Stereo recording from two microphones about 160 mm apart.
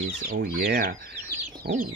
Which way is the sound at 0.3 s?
70° right (ahead or behind).